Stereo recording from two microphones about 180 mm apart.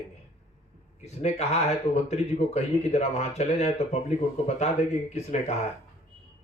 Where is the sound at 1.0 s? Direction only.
35° left (ahead or behind).